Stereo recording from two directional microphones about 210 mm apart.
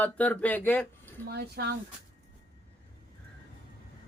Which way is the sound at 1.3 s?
50° right (ahead or behind).